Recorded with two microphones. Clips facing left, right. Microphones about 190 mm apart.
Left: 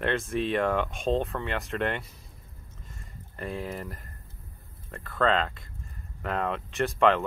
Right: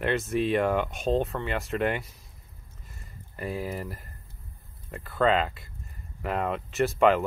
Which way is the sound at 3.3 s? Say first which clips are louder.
Right 2 dB; 5° right (ahead or behind).